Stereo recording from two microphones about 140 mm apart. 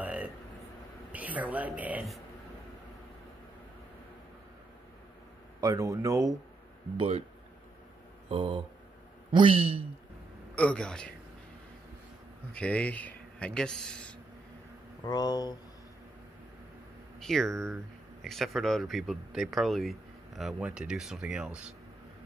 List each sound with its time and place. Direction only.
0.0 s a sound: 10° right (ahead or behind)
1.1 s speech: 10° right (ahead or behind)
5.6 s speech: 25° right (ahead or behind)
7.0 s speech: 45° right (ahead or behind)
8.3 s a man's voice: 40° right (ahead or behind)
10.5 s speech: 10° left (ahead or behind)
12.5 s speech: 10° left (ahead or behind)
15.0 s speech: 30° left (ahead or behind)
17.2 s speech: 5° left (ahead or behind)